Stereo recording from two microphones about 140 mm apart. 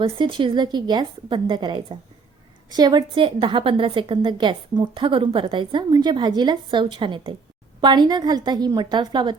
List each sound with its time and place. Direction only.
0.0 s a woman's voice: 35° right (ahead or behind)